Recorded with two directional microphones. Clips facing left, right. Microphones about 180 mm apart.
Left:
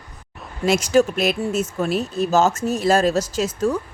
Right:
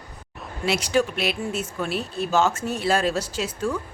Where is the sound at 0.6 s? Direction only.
45° left (ahead or behind).